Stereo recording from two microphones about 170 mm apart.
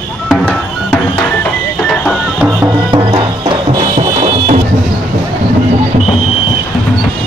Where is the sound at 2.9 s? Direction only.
30° right (ahead or behind).